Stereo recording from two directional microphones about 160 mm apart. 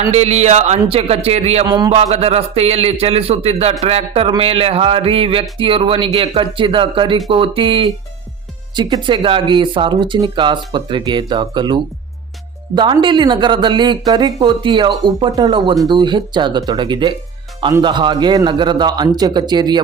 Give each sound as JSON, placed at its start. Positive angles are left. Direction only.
{"t": 0.1, "sound": "speech", "side_deg": -45}
{"t": 1.6, "sound": "speech", "side_deg": -25}
{"t": 1.9, "sound": "speech", "side_deg": -40}